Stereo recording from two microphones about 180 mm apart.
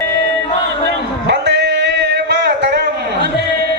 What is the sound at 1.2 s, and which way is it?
Music, 70° right (ahead or behind).